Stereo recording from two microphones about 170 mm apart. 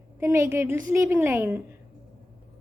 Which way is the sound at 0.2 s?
15° right (ahead or behind).